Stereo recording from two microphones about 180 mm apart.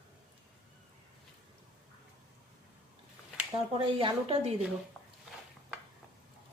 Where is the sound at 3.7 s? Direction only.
30° right (ahead or behind).